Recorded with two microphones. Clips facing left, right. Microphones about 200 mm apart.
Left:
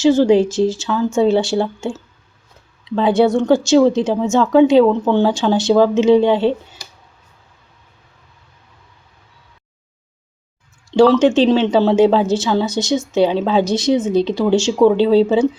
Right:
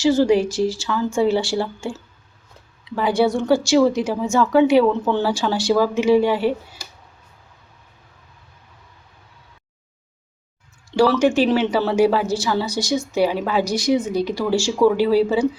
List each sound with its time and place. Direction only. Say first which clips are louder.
0.0 s a woman's voice: left 4 dB; 20° left (ahead or behind)
11.1 s a woman's voice: left 4 dB; 20° left (ahead or behind)